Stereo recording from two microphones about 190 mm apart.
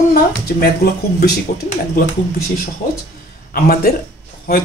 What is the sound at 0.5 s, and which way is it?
Speech, 55° left (ahead or behind).